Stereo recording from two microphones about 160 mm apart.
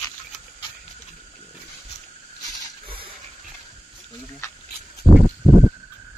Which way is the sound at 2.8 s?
35° right (ahead or behind).